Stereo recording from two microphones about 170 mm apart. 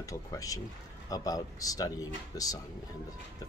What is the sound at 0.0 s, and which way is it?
Speech, 20° left (ahead or behind).